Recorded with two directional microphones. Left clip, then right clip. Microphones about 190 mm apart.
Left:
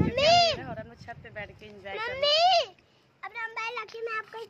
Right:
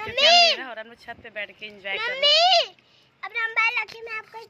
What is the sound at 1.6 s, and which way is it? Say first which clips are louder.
Speech: right 7 dB; 5° right (ahead or behind).